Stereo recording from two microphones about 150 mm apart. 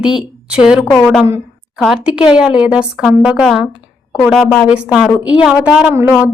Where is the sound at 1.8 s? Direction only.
Centre (ahead or behind).